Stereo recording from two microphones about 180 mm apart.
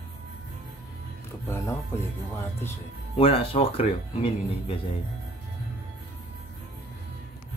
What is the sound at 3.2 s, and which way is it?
A man's voice, 30° left (ahead or behind).